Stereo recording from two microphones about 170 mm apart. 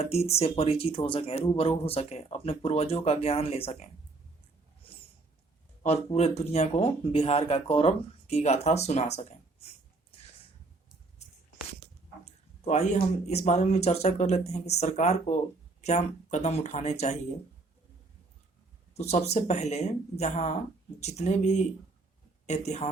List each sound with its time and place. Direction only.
0.0 s speech: 35° left (ahead or behind)
5.8 s speech: 35° left (ahead or behind)
12.2 s speech: 40° left (ahead or behind)
18.9 s speech: 40° left (ahead or behind)